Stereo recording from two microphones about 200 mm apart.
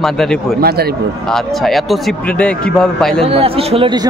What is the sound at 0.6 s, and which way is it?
Speech, 50° right (ahead or behind).